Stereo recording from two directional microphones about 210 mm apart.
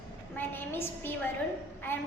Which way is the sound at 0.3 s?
10° left (ahead or behind).